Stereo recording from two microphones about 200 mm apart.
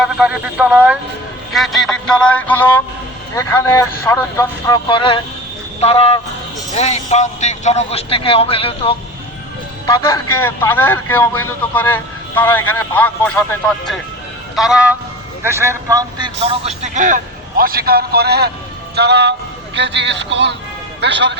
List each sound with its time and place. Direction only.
0.0 s a man's voice: 5° right (ahead or behind); by 10.1 s 20° left (ahead or behind)
10.4 s a man's voice: 10° left (ahead or behind)
14.5 s speech: 5° right (ahead or behind)
15.4 s a man's voice: 15° right (ahead or behind); by 21.3 s 60° right (ahead or behind)